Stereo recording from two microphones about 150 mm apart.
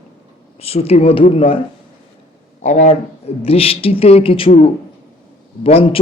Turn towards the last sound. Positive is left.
turn(degrees=40)  # may be behind; listen again after turning